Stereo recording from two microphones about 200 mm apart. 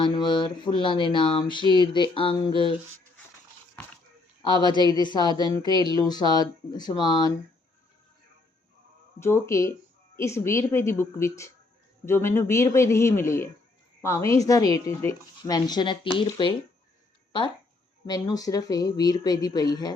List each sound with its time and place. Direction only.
0.0 s speech: 25° left (ahead or behind)
4.4 s speech: 20° left (ahead or behind)
9.2 s a woman's voice: 15° left (ahead or behind)
18.0 s speech: 20° left (ahead or behind)